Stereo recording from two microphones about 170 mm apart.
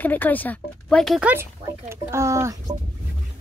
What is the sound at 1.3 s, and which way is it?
Speech, 15° right (ahead or behind).